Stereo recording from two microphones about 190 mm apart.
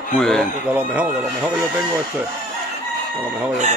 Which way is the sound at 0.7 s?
5° right (ahead or behind).